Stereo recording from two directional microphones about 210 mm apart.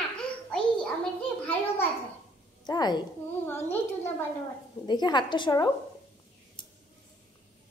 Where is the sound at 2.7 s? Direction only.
20° left (ahead or behind).